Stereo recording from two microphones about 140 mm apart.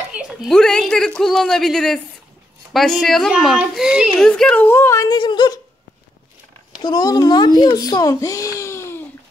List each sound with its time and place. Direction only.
0.1 s speech: 5° right (ahead or behind)
4.3 s speech: 10° left (ahead or behind)
5.0 s speech: 30° left (ahead or behind)
6.8 s a child's voice: 30° left (ahead or behind)
8.5 s a sound: 20° left (ahead or behind)